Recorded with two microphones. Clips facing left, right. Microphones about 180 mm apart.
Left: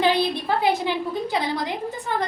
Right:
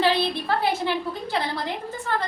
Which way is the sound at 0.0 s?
15° left (ahead or behind).